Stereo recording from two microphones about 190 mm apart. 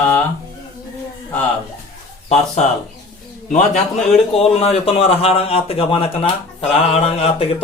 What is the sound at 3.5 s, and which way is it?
A man's voice, 40° left (ahead or behind).